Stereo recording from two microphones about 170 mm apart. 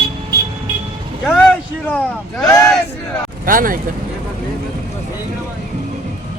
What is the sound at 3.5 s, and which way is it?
Speech, 55° right (ahead or behind).